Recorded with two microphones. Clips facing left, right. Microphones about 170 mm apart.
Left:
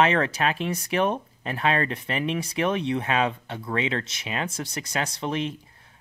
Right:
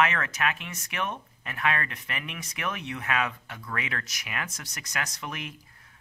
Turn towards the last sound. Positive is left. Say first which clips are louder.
# left 10 dB
turn(degrees=30)  # may be behind; listen again after turning